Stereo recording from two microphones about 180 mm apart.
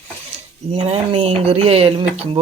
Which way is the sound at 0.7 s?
35° right (ahead or behind).